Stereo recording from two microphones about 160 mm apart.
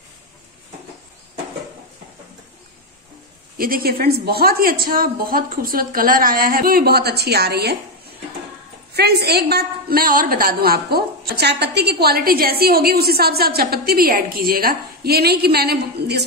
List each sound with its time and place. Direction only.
3.5 s a woman's voice: 65° right (ahead or behind); by 7.7 s 85° right
8.9 s a woman's voice: 90° right